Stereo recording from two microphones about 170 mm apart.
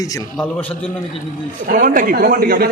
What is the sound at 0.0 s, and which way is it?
Speech, 20° left (ahead or behind).